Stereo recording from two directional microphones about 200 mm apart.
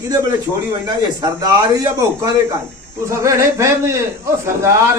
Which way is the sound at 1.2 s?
15° right (ahead or behind).